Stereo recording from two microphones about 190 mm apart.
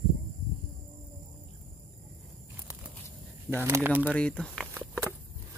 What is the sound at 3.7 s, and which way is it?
Speech, 10° right (ahead or behind).